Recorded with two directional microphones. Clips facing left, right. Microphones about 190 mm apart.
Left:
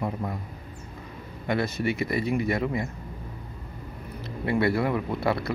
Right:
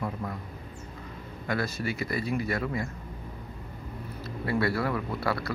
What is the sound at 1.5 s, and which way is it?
Speech, 20° left (ahead or behind).